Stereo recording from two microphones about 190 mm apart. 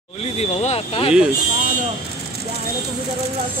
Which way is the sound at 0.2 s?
35° left (ahead or behind).